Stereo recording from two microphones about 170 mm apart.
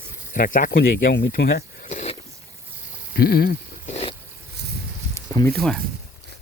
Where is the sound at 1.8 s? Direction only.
45° left (ahead or behind).